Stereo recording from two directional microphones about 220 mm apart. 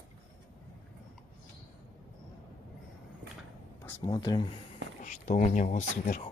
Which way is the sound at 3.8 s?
15° left (ahead or behind).